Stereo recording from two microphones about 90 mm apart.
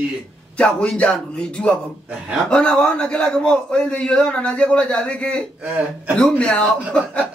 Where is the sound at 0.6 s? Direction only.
10° left (ahead or behind).